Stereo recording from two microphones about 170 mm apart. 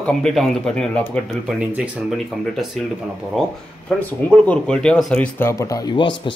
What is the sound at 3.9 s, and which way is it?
Speech, 10° left (ahead or behind).